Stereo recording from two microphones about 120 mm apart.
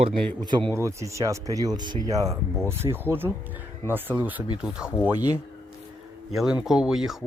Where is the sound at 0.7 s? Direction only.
25° right (ahead or behind).